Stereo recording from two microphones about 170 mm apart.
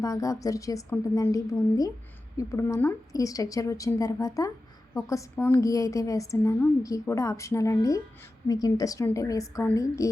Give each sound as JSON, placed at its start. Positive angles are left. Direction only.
{"t": 0.0, "sound": "a woman's voice", "side_deg": 20}